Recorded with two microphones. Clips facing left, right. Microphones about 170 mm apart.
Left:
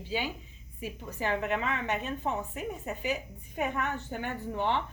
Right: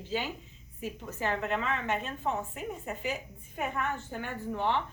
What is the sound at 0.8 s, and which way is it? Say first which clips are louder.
A woman's voice: even; 15° left (ahead or behind).